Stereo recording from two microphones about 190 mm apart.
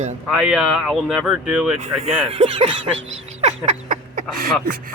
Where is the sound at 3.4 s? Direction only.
40° right (ahead or behind).